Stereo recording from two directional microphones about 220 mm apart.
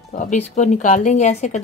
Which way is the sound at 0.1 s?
35° left (ahead or behind).